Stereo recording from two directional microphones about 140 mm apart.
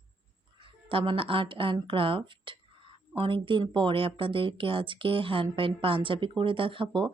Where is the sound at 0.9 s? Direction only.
40° right (ahead or behind).